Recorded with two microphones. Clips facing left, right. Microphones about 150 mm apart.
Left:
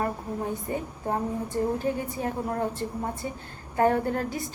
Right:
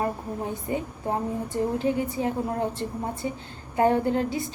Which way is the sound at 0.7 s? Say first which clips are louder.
Right 4 dB; 20° right (ahead or behind).